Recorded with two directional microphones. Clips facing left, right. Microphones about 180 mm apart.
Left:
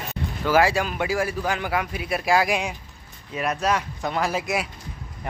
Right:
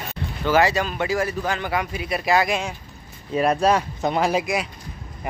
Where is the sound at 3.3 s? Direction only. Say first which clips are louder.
Right 5 dB; 30° right (ahead or behind).